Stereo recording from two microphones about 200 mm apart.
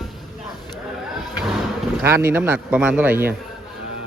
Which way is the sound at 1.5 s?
Centre (ahead or behind).